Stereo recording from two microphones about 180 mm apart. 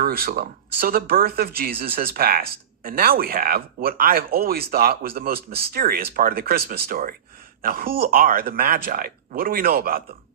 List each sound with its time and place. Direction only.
0.0 s speech: 55° right (ahead or behind)